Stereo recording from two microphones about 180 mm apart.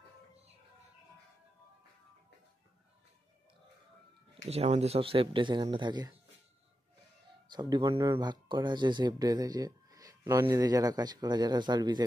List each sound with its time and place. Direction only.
4.5 s speech: 35° right (ahead or behind)
7.5 s speech: 25° right (ahead or behind)